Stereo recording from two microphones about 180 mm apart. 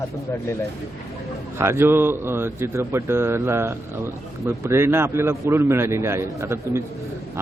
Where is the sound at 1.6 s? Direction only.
15° right (ahead or behind).